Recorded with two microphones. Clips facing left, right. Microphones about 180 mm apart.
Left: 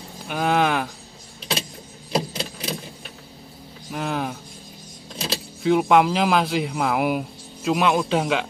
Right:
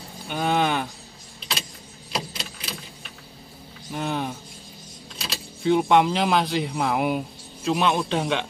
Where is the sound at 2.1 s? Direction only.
45° left (ahead or behind).